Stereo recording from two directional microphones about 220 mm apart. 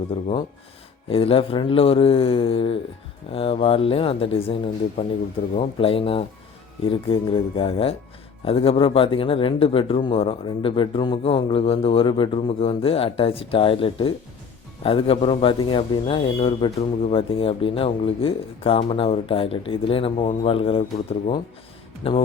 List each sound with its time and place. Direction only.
0.1 s a man's voice: 25° left (ahead or behind)